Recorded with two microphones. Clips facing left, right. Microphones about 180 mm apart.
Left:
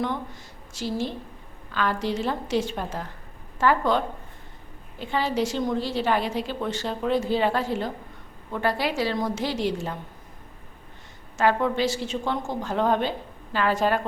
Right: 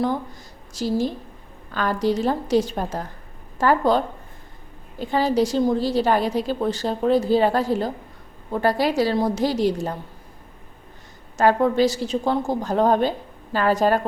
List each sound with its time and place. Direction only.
0.7 s a woman's voice: 40° right (ahead or behind)
11.3 s a woman's voice: 40° right (ahead or behind)